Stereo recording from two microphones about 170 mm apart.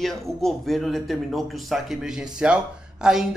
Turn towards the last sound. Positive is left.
turn(degrees=-5)  # may be behind; listen again after turning